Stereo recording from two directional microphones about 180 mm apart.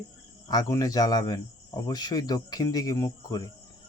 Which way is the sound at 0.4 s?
20° left (ahead or behind).